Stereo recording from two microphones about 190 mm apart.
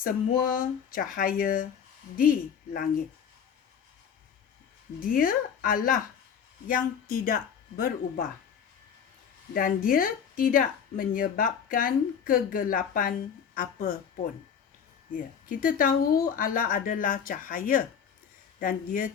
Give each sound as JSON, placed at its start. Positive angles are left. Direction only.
{"t": 0.0, "sound": "a woman's voice", "side_deg": 45}
{"t": 2.7, "sound": "a woman's voice", "side_deg": 45}
{"t": 4.9, "sound": "a woman's voice", "side_deg": 45}
{"t": 9.6, "sound": "a woman's voice", "side_deg": 50}
{"t": 15.1, "sound": "a woman's voice", "side_deg": 45}